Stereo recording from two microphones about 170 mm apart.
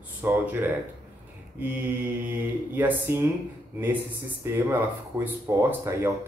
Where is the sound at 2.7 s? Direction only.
10° right (ahead or behind).